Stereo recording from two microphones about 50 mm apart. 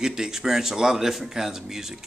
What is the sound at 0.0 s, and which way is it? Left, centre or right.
Speech, centre.